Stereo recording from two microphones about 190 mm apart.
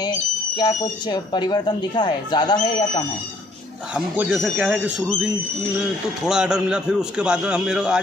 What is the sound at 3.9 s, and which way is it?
Speech, 5° right (ahead or behind).